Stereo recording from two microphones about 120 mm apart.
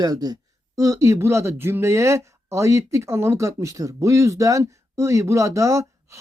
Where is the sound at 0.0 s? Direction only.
30° right (ahead or behind).